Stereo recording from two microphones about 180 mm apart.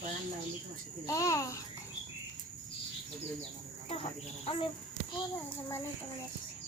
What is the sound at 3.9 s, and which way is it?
Speech, 30° left (ahead or behind).